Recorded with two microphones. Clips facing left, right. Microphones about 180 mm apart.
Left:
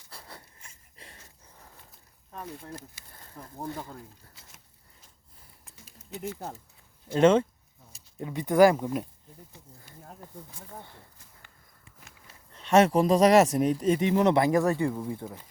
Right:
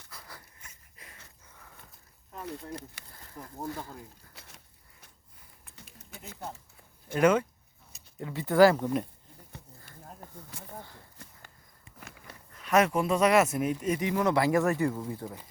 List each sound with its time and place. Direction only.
0.1 s dog: 30° left (ahead or behind)
3.0 s a sound: 65° right (ahead or behind)
3.4 s speech: 5° right (ahead or behind)
4.4 s a sound: 65° right (ahead or behind)
7.1 s speech: 25° left (ahead or behind); by 9.0 s 10° left (ahead or behind)
10.5 s speech: 80° right
11.2 s walk: 70° right (ahead or behind)
11.9 s a sound: 65° right (ahead or behind)
12.5 s speech: 30° left (ahead or behind); by 15.4 s 15° left (ahead or behind)